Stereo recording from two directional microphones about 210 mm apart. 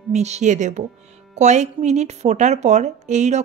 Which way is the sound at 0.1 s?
30° right (ahead or behind).